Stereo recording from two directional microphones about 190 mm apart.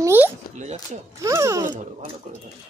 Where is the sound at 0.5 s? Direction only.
40° right (ahead or behind).